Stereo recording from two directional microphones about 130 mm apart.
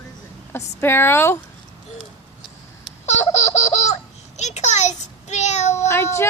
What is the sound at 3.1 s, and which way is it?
Laughter, 60° left (ahead or behind).